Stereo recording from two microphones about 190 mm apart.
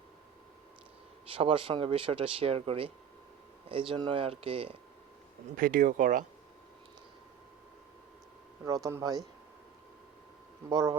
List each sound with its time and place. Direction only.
1.3 s speech: 30° right (ahead or behind)
5.5 s speech: 45° right (ahead or behind)
8.6 s speech: 15° right (ahead or behind)
10.7 s speech: 20° right (ahead or behind)